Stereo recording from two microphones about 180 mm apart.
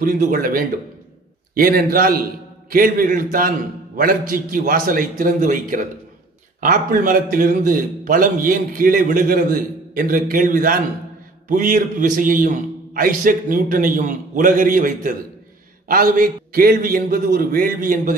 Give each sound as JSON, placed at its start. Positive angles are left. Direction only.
{"t": 0.0, "sound": "a man's voice", "side_deg": -50}